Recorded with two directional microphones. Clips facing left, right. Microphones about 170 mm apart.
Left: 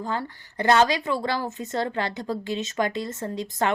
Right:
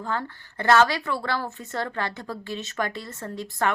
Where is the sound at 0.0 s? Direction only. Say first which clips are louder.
Left 1 dB; 15° left (ahead or behind).